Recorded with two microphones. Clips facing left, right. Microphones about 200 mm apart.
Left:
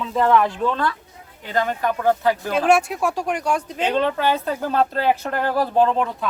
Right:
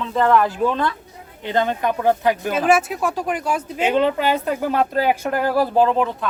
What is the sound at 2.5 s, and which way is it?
Speech, 5° right (ahead or behind).